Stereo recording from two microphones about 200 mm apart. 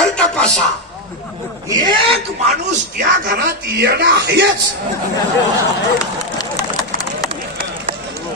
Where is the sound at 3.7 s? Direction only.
55° right (ahead or behind).